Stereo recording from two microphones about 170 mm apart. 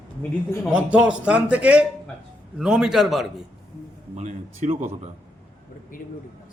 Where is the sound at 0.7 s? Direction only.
5° right (ahead or behind).